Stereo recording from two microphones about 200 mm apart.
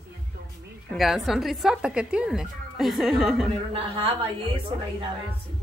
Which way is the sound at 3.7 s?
30° right (ahead or behind).